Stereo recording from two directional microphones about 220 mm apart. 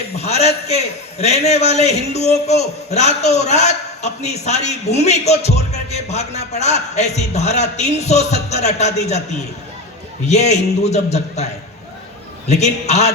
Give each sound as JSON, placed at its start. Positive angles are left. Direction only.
{"t": 0.2, "sound": "a man's voice", "side_deg": 30}
{"t": 10.2, "sound": "a man's voice", "side_deg": 30}
{"t": 12.5, "sound": "a man's voice", "side_deg": 30}